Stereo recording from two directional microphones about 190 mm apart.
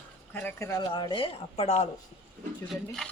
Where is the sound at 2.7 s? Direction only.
Centre (ahead or behind).